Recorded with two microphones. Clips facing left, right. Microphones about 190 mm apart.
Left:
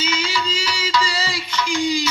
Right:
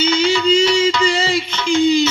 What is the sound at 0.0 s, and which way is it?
Music, 30° right (ahead or behind).